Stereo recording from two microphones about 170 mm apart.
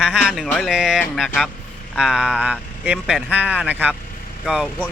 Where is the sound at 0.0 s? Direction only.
5° right (ahead or behind).